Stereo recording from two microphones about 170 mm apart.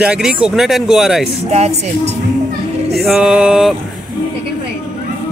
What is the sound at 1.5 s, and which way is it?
Speech, 40° right (ahead or behind).